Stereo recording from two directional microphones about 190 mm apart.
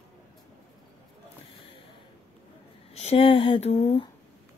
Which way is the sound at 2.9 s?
35° left (ahead or behind).